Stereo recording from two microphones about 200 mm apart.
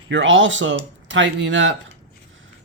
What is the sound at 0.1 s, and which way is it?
Speech, 70° right (ahead or behind).